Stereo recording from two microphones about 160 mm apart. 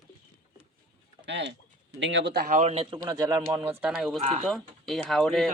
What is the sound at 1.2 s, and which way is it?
Speech, 90° right.